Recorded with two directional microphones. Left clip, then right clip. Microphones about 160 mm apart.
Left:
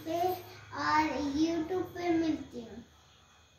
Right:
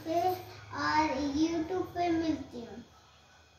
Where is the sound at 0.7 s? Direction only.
5° left (ahead or behind).